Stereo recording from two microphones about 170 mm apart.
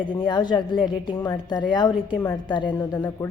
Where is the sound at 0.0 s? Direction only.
25° left (ahead or behind).